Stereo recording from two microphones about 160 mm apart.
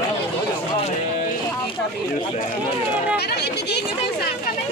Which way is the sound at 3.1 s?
90° left.